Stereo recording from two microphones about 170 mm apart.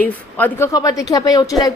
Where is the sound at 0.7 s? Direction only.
20° left (ahead or behind).